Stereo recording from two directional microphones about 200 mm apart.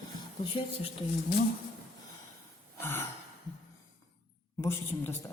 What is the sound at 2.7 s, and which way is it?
Gasp, 10° left (ahead or behind).